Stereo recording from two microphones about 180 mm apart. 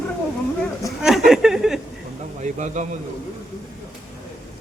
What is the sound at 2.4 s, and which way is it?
Speech, 40° right (ahead or behind).